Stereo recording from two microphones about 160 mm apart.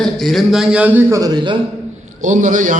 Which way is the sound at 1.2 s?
25° right (ahead or behind).